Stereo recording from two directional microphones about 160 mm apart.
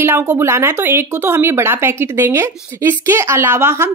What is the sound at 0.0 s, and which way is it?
A woman's voice, 15° right (ahead or behind).